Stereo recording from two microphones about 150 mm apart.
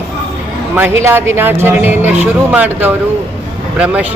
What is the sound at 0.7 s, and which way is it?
Speech, 15° right (ahead or behind).